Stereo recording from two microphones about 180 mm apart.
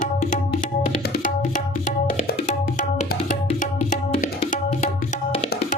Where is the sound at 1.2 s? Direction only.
45° left (ahead or behind).